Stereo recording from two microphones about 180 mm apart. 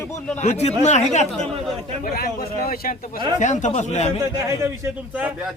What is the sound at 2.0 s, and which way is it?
Speech, 55° left (ahead or behind).